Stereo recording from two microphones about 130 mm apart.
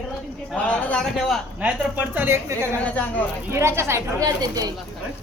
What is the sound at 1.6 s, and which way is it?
A woman's voice, 15° right (ahead or behind).